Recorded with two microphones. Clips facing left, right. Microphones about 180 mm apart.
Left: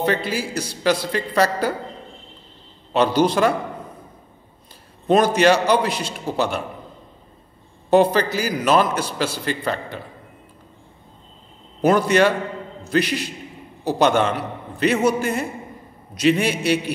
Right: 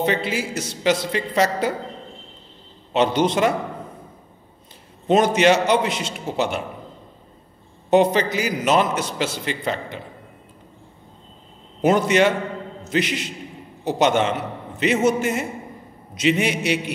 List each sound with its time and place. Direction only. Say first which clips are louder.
0.0 s a man's voice: even; 20° right (ahead or behind)
2.9 s a man's voice: left 1 dB; 20° right (ahead or behind)
5.0 s a man's voice: left 1 dB; 20° right (ahead or behind)
7.9 s a man's voice: left 1 dB; 20° right (ahead or behind)
11.8 s a man's voice: left 1 dB; 20° right (ahead or behind)